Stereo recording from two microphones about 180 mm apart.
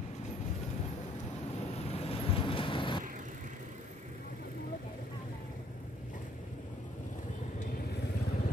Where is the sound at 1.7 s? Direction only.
35° left (ahead or behind).